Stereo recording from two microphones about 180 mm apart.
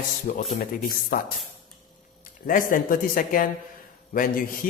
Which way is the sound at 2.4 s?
50° left (ahead or behind).